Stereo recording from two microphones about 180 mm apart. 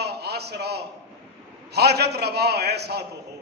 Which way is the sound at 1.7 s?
65° right (ahead or behind).